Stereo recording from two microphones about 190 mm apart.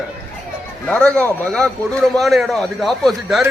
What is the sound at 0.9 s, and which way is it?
Speech, 5° left (ahead or behind).